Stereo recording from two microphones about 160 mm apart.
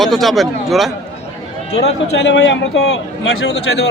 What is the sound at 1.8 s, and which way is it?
A man's voice, 90° left.